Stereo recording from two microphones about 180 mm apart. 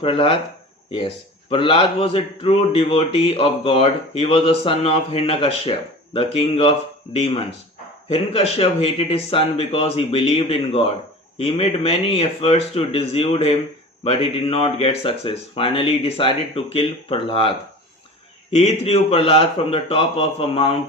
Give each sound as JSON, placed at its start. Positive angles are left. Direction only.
{"t": 0.0, "sound": "a man's voice", "side_deg": 30}
{"t": 18.5, "sound": "a man's voice", "side_deg": 35}